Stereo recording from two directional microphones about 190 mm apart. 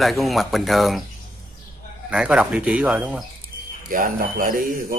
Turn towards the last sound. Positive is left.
turn(degrees=-45)  # may be behind; listen again after turning